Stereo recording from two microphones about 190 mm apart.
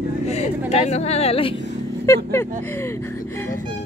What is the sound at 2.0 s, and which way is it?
Speech, 15° left (ahead or behind).